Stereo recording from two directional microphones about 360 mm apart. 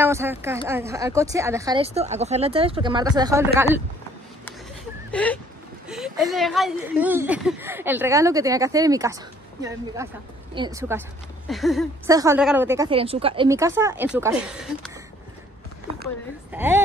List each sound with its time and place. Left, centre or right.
0.0 s a woman's voice: centre
5.1 s a woman's voice: centre
16.5 s speech: centre